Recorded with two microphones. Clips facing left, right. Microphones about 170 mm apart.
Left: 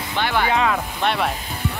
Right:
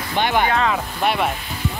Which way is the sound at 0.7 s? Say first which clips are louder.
Right 1 dB; 5° right (ahead or behind).